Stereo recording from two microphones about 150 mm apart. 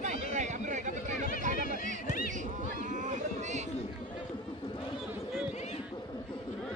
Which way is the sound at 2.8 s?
60° right (ahead or behind).